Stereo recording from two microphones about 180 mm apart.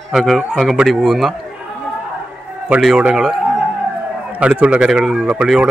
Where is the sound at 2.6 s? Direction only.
5° right (ahead or behind).